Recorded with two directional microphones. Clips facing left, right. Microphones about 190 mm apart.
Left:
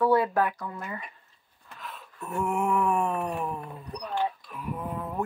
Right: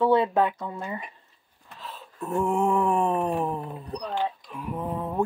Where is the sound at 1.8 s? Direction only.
30° right (ahead or behind).